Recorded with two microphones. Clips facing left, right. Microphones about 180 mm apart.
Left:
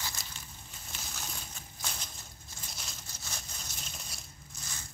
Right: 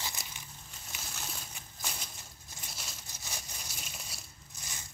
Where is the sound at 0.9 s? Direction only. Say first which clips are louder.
Even; 5° right (ahead or behind).